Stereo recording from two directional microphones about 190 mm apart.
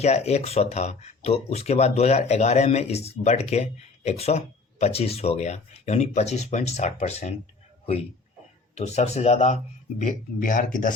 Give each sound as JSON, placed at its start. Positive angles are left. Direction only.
{"t": 0.0, "sound": "speech", "side_deg": 35}
{"t": 8.7, "sound": "speech", "side_deg": 35}